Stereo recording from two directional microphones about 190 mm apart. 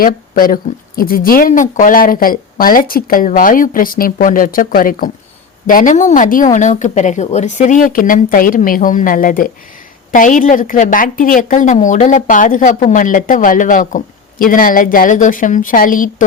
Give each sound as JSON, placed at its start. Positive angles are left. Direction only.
{"t": 0.0, "sound": "a woman's voice", "side_deg": 50}